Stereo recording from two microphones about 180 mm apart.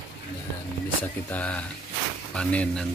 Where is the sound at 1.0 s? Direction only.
10° left (ahead or behind).